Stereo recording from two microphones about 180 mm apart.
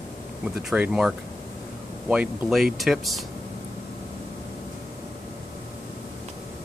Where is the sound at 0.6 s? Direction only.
5° right (ahead or behind).